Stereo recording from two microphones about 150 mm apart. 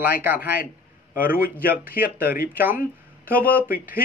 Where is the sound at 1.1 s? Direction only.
70° left (ahead or behind).